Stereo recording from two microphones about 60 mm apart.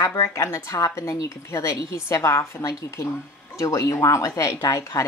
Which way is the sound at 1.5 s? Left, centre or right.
Left.